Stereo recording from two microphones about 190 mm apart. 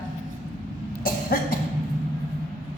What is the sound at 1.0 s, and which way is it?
Cough, 50° left (ahead or behind).